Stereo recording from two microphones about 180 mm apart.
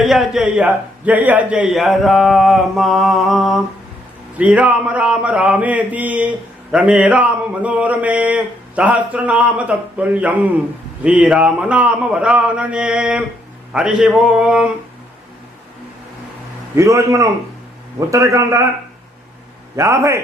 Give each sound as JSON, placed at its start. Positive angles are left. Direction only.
{"t": 0.0, "sound": "a man's voice", "side_deg": 0}
{"t": 4.4, "sound": "mantra", "side_deg": -5}
{"t": 13.7, "sound": "a man's voice", "side_deg": -5}
{"t": 16.7, "sound": "mantra", "side_deg": -15}
{"t": 19.7, "sound": "mantra", "side_deg": -15}